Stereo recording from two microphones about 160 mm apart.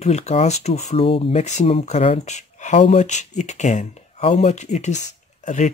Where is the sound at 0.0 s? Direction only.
45° left (ahead or behind).